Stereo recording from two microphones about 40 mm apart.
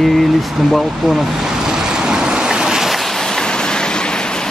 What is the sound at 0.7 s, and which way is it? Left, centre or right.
Waves, centre.